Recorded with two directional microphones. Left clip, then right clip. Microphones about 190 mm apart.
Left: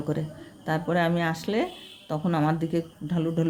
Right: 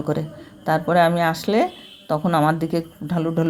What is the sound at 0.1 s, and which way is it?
A woman's voice, 15° right (ahead or behind).